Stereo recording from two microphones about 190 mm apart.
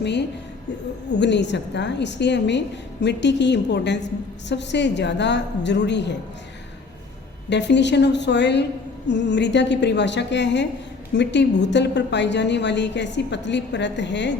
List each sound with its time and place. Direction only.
0.0 s a woman's voice: 65° left (ahead or behind)
7.5 s a woman's voice: 65° left (ahead or behind)